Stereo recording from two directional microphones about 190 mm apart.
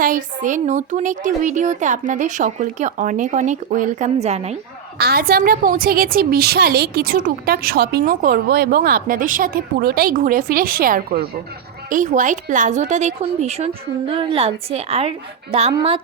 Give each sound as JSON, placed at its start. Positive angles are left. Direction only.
{"t": 0.0, "sound": "speech", "side_deg": -45}
{"t": 4.9, "sound": "a woman's voice", "side_deg": -55}